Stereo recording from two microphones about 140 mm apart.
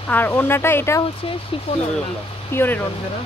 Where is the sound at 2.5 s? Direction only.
15° left (ahead or behind).